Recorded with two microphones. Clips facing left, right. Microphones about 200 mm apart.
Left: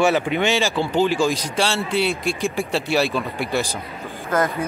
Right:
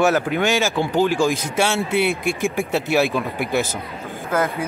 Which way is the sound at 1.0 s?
15° right (ahead or behind).